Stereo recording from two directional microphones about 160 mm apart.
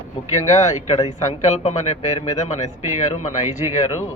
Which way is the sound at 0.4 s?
45° left (ahead or behind).